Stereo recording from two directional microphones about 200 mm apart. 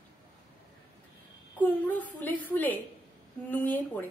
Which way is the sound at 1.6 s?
10° left (ahead or behind).